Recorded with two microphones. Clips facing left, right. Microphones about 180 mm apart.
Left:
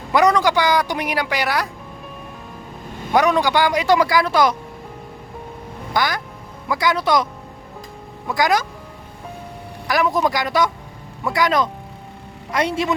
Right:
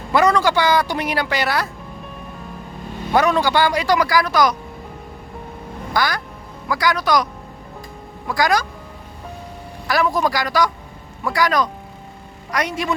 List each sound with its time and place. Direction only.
0.1 s speech: 15° left (ahead or behind)
3.1 s speech: 15° left (ahead or behind)
5.9 s speech: 20° left (ahead or behind)
8.3 s speech: 20° left (ahead or behind)
9.8 s speech: 15° left (ahead or behind)